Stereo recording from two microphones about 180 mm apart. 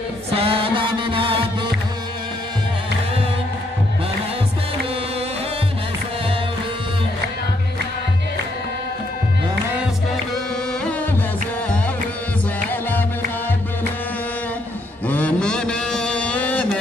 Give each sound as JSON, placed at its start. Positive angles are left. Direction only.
{"t": 0.3, "sound": "music", "side_deg": -30}
{"t": 15.0, "sound": "mantra", "side_deg": 10}